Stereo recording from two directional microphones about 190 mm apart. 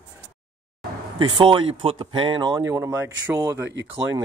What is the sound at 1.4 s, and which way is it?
Speech, 25° right (ahead or behind).